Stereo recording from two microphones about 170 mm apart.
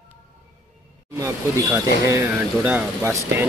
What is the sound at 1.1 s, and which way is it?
Speech, 15° right (ahead or behind).